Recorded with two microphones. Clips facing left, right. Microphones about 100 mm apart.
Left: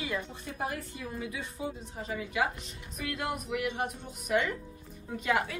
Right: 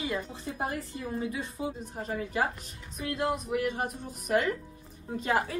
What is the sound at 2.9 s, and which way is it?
A woman's voice, 30° right (ahead or behind).